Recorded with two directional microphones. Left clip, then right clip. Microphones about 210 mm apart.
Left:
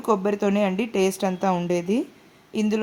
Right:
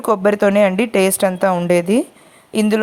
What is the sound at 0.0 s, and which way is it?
Speech, 30° right (ahead or behind).